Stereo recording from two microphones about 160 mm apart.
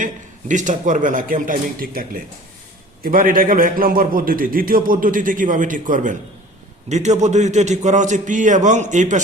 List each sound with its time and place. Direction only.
0.0 s a man's voice: 50° right (ahead or behind)